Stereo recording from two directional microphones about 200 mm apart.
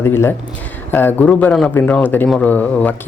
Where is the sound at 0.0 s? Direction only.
10° left (ahead or behind).